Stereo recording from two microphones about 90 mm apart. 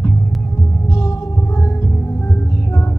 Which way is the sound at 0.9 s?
35° left (ahead or behind).